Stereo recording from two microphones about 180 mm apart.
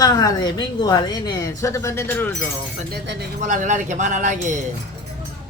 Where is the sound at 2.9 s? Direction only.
60° right (ahead or behind).